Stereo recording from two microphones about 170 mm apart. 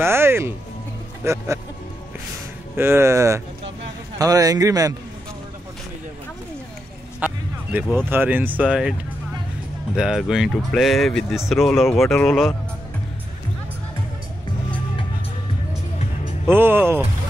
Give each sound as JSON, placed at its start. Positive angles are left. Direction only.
{"t": 0.0, "sound": "speech", "side_deg": -15}
{"t": 2.7, "sound": "speech", "side_deg": -15}
{"t": 7.2, "sound": "music", "side_deg": -10}
{"t": 7.7, "sound": "speech", "side_deg": -10}
{"t": 9.9, "sound": "speech", "side_deg": -5}
{"t": 16.4, "sound": "speech", "side_deg": -10}